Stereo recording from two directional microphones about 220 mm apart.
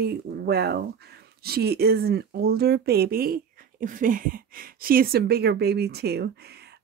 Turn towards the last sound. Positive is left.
turn(degrees=-45)  # may be behind; listen again after turning